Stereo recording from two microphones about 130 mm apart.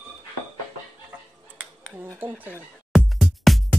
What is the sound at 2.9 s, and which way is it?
Music, centre (ahead or behind).